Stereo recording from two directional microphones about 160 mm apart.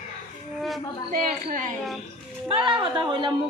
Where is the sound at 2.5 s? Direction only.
30° right (ahead or behind).